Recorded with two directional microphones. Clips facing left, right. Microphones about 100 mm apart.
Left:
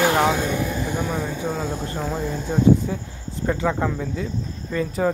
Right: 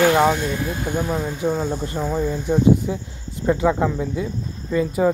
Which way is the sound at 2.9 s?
15° right (ahead or behind).